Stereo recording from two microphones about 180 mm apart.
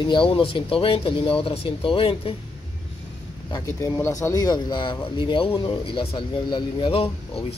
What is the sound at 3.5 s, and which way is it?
Speech, 15° left (ahead or behind).